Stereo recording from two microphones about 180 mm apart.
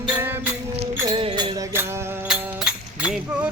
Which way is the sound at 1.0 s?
25° right (ahead or behind).